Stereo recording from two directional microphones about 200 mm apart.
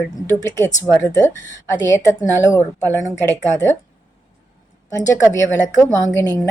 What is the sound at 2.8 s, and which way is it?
Speech, 15° right (ahead or behind).